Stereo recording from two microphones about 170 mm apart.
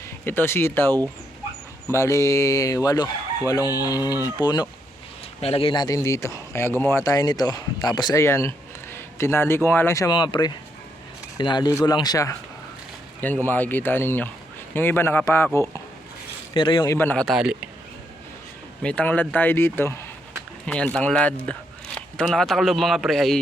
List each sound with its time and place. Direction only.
0.3 s speech: 15° left (ahead or behind)
1.9 s chicken: 15° left (ahead or behind)
5.4 s speech: 35° left (ahead or behind)
11.3 s chicken: 25° left (ahead or behind)
13.2 s speech: 10° left (ahead or behind)
16.6 s chicken: 30° left (ahead or behind)
16.8 s speech: 15° left (ahead or behind)
17.2 s speech: 5° right (ahead or behind)
18.8 s speech: 5° left (ahead or behind)